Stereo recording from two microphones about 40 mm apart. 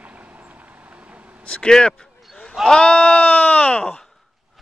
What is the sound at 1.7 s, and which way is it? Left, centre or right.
Speech, centre.